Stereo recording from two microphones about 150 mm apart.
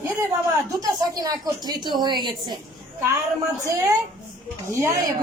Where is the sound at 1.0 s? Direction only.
25° right (ahead or behind).